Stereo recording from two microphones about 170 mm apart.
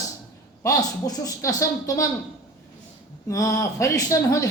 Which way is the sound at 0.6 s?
20° left (ahead or behind).